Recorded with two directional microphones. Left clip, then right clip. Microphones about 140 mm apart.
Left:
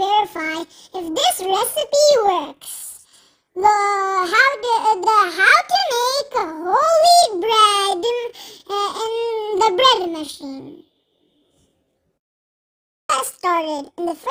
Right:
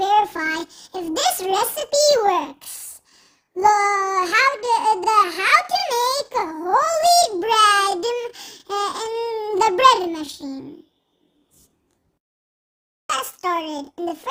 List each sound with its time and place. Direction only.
0.0 s a child's voice: 5° right (ahead or behind)
3.1 s child singing: centre (ahead or behind)
13.1 s a child's voice: 20° left (ahead or behind)